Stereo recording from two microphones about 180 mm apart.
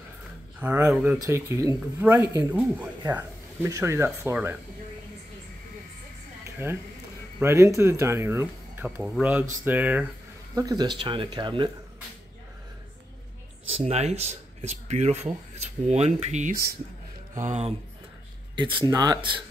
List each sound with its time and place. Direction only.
0.6 s speech: 10° right (ahead or behind)
6.4 s a sound: 15° right (ahead or behind)
7.3 s speech: 15° right (ahead or behind)
10.5 s speech: 20° right (ahead or behind)
13.7 s speech: 35° right (ahead or behind)
18.6 s speech: 25° right (ahead or behind)